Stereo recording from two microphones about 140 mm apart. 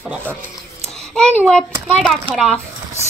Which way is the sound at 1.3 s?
5° left (ahead or behind).